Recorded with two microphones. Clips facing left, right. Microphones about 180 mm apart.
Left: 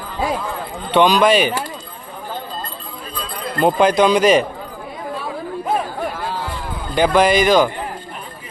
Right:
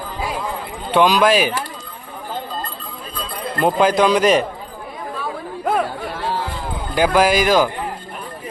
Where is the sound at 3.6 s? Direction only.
Centre (ahead or behind).